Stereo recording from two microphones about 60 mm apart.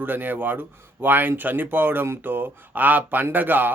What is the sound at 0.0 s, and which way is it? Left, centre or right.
Speech, right.